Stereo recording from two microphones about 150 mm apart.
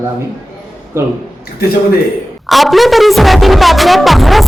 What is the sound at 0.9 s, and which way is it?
Speech, 15° right (ahead or behind).